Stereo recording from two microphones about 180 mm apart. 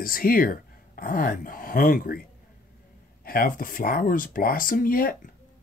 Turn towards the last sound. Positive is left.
turn(degrees=50)  # may be behind; listen again after turning